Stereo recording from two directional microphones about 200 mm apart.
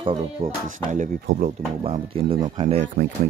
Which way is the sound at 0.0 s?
30° right (ahead or behind).